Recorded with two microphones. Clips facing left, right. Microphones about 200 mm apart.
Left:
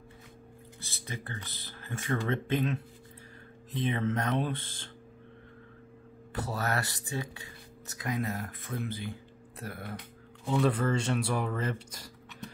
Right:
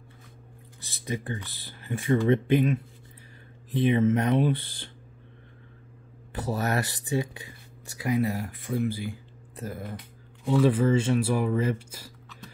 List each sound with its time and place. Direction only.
0.8 s speech: 15° right (ahead or behind)
3.7 s speech: 15° right (ahead or behind)
6.4 s speech: 15° right (ahead or behind)
10.5 s speech: 5° right (ahead or behind)